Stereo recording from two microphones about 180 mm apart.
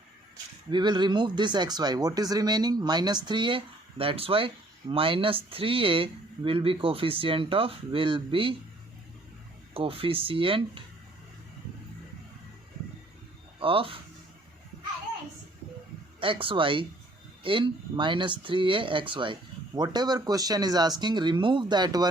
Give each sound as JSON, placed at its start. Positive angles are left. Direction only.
{"t": 0.7, "sound": "speech", "side_deg": -25}
{"t": 9.7, "sound": "speech", "side_deg": -30}
{"t": 13.6, "sound": "speech", "side_deg": -30}
{"t": 16.2, "sound": "speech", "side_deg": -30}